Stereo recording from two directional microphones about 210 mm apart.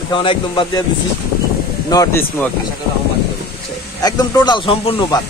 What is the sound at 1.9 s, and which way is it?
Speech, 15° left (ahead or behind).